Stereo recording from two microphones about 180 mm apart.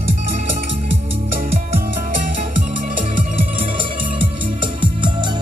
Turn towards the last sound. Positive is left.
turn(degrees=-25)  # may be behind; listen again after turning